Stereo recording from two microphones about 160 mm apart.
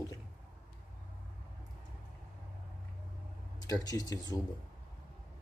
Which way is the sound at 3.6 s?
20° left (ahead or behind).